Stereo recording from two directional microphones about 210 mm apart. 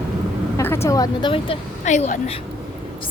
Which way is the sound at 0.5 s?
10° left (ahead or behind).